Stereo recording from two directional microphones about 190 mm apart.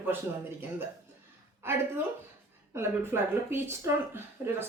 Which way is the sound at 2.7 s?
10° right (ahead or behind).